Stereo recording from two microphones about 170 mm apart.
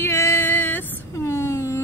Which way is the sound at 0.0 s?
15° left (ahead or behind).